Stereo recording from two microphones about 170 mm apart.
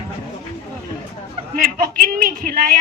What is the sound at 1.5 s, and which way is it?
A man's voice, 60° right (ahead or behind).